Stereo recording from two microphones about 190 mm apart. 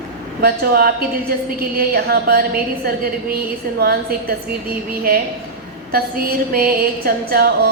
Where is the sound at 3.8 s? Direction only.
55° right (ahead or behind).